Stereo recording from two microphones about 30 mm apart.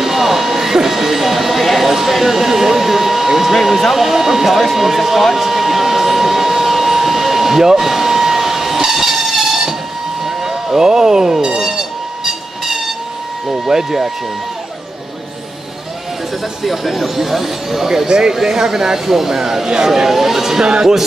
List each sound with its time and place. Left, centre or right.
0.0 s a sound: centre
3.5 s speech: centre
5.3 s hair dryer: centre
10.2 s vehicle: centre
12.3 s train: centre
13.5 s speech: centre
16.6 s speech: centre
17.8 s speech: right
18.3 s speech: centre